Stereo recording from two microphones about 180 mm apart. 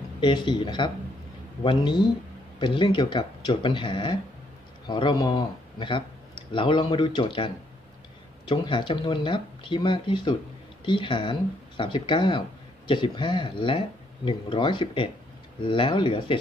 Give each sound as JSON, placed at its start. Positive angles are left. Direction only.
{"t": 0.2, "sound": "speech", "side_deg": 25}